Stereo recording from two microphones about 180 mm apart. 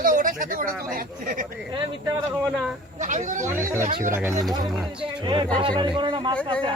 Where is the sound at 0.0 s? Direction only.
50° right (ahead or behind).